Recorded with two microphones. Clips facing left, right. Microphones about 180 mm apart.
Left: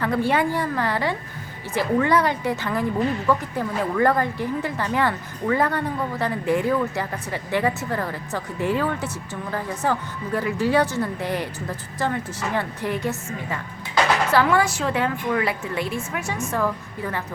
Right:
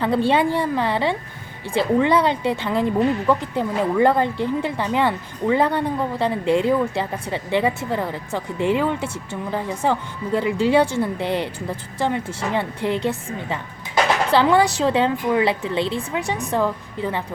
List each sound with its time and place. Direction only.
0.0 s a woman's voice: 25° right (ahead or behind)
17.0 s a woman's voice: 20° right (ahead or behind)